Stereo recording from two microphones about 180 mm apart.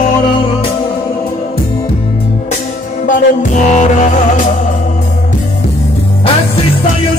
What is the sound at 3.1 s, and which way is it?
Music, 45° left (ahead or behind).